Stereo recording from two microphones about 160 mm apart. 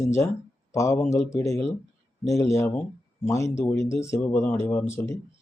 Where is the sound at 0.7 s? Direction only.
20° left (ahead or behind).